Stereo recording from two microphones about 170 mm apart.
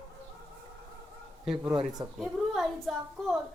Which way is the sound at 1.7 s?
20° right (ahead or behind).